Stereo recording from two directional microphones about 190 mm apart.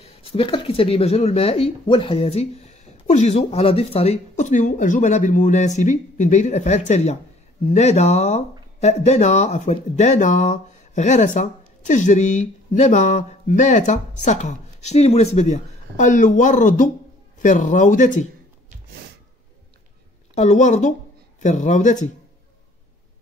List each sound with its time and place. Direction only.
0.0 s speech: 30° left (ahead or behind)
20.3 s speech: 40° left (ahead or behind)